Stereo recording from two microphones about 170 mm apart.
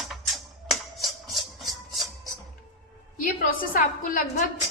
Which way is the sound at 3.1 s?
55° left (ahead or behind).